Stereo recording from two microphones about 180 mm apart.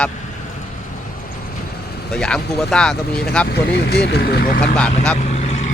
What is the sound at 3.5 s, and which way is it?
Speech, 65° left (ahead or behind).